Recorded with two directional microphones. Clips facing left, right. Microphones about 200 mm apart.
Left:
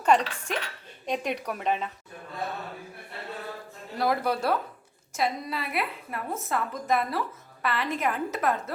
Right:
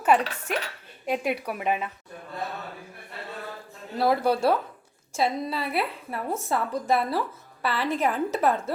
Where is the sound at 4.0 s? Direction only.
30° right (ahead or behind).